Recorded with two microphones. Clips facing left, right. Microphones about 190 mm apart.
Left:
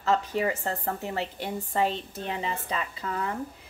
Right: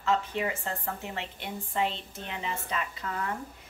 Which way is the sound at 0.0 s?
40° left (ahead or behind).